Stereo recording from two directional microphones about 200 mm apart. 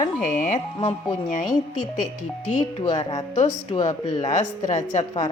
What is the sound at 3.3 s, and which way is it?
Speech, 35° left (ahead or behind).